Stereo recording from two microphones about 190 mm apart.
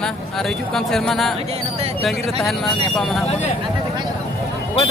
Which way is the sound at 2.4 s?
Centre (ahead or behind).